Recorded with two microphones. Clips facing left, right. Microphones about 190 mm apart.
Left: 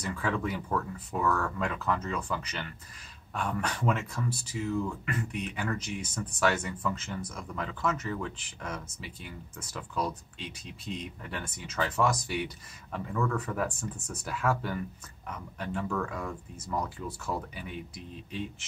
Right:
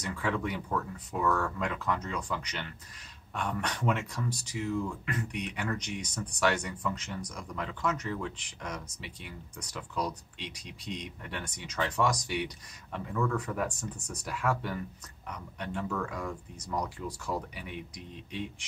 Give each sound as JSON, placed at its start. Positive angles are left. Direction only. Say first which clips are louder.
{"t": 0.2, "sound": "speech", "louder": "even", "side_deg": 0}